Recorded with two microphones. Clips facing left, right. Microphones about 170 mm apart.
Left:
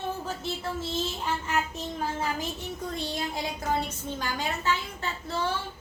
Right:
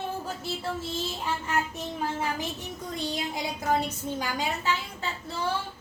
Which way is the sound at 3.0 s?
15° right (ahead or behind).